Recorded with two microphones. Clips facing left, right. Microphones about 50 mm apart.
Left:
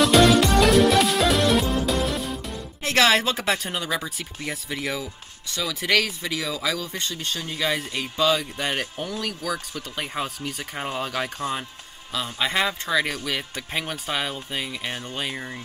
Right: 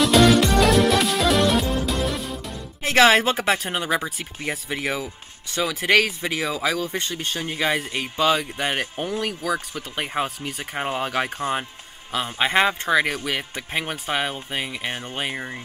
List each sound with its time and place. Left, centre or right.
0.0 s music: centre
2.8 s speech: right
12.4 s speech: right
14.9 s speech: centre
15.1 s speech: right